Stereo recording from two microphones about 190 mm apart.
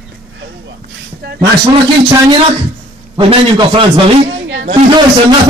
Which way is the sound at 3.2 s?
25° right (ahead or behind).